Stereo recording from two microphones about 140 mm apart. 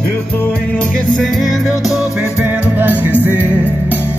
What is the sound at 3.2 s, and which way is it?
Music, 15° right (ahead or behind).